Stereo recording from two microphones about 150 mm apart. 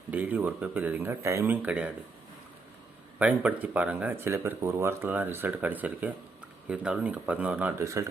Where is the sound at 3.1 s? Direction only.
10° right (ahead or behind).